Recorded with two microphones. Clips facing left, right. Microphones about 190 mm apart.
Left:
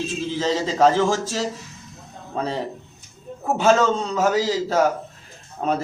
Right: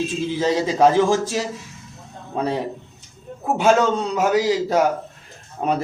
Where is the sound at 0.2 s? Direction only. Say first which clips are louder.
Right 2 dB; 15° right (ahead or behind).